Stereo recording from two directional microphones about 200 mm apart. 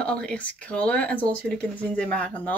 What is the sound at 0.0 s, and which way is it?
Speech, 5° left (ahead or behind).